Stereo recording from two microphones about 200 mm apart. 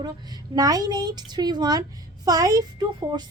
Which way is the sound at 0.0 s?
20° right (ahead or behind).